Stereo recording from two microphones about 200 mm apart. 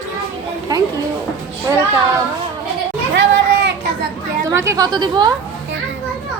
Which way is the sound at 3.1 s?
60° right (ahead or behind).